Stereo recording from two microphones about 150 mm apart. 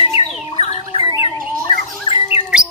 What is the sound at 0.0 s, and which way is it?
Bird, 40° left (ahead or behind).